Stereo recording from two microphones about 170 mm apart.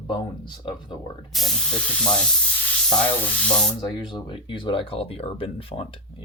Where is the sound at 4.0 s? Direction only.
30° left (ahead or behind).